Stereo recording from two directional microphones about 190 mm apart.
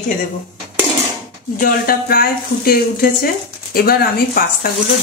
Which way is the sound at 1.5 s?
50° left (ahead or behind).